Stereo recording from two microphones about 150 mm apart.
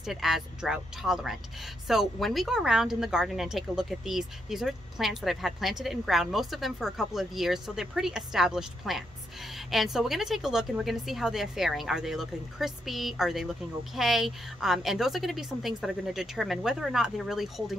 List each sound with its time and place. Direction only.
0.0 s speech: centre (ahead or behind)